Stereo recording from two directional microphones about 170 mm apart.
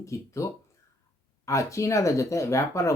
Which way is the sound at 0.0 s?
15° left (ahead or behind).